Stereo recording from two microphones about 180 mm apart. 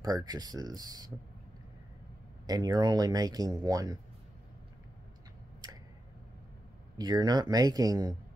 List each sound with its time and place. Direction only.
0.0 s speech: 20° right (ahead or behind)
2.4 s speech: 20° right (ahead or behind)
7.0 s speech: 20° right (ahead or behind)